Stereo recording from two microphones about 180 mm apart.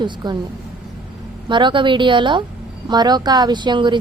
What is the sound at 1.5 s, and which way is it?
A woman's voice, 25° right (ahead or behind).